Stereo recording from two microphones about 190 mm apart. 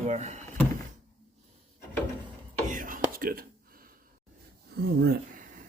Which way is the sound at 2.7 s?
45° right (ahead or behind).